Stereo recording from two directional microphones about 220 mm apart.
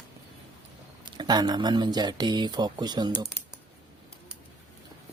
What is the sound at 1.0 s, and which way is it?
Speech, 20° right (ahead or behind).